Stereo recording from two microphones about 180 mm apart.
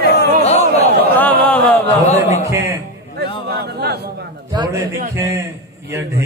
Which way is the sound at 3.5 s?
65° right (ahead or behind).